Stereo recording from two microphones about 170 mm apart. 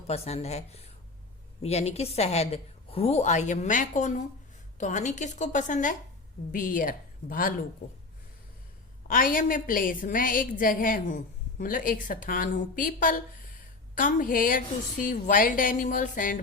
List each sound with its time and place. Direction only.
0.1 s a woman's voice: 40° left (ahead or behind); by 7.5 s 55° left (ahead or behind)
7.8 s a woman's voice: 45° left (ahead or behind)
9.0 s a woman's voice: 55° left (ahead or behind)